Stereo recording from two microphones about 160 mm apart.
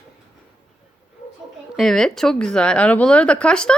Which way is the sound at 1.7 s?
Centre (ahead or behind).